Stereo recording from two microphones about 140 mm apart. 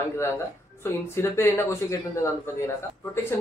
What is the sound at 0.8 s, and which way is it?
Speech, 20° left (ahead or behind).